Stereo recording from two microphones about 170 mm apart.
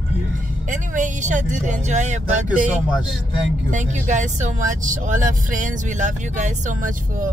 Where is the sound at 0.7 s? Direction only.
50° right (ahead or behind).